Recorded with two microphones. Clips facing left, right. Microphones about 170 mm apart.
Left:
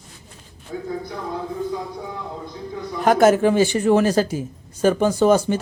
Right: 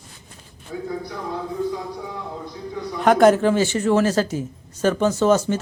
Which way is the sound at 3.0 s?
5° left (ahead or behind).